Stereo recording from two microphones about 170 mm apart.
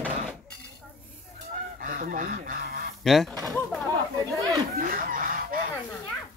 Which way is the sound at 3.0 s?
Centre (ahead or behind).